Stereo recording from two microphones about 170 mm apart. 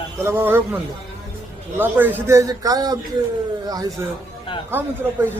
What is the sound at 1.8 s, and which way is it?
A man's voice, 10° right (ahead or behind).